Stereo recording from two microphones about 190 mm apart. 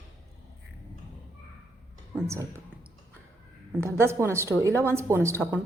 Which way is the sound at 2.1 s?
15° right (ahead or behind).